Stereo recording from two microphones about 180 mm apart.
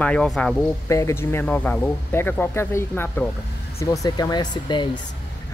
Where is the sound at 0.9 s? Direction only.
15° left (ahead or behind).